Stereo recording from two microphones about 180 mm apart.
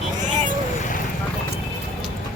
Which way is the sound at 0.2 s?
45° right (ahead or behind).